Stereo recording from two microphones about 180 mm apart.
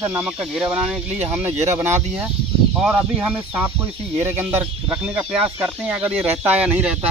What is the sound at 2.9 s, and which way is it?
Speech, 5° right (ahead or behind).